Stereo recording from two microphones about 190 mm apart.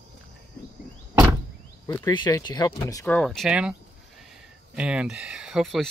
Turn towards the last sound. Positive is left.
turn(degrees=0)  # may be behind; listen again after turning